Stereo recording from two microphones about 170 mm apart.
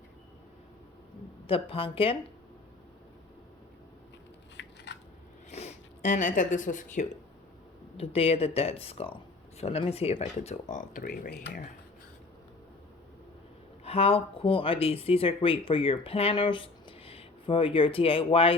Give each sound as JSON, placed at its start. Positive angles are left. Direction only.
{"t": 1.5, "sound": "speech", "side_deg": 35}
{"t": 4.6, "sound": "scissors", "side_deg": 90}
{"t": 5.5, "sound": "speech", "side_deg": 40}
{"t": 7.9, "sound": "speech", "side_deg": 35}
{"t": 13.8, "sound": "speech", "side_deg": 35}